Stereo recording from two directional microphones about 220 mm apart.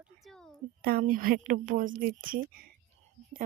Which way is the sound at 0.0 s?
Centre (ahead or behind).